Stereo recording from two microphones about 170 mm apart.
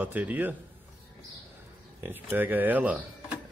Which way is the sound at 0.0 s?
10° right (ahead or behind).